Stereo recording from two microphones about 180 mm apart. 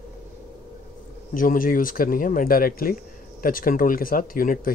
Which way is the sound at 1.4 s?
50° left (ahead or behind).